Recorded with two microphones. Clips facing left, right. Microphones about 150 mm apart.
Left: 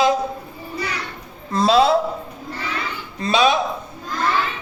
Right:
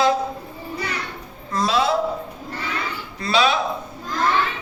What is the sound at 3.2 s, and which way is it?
Speech, 20° left (ahead or behind).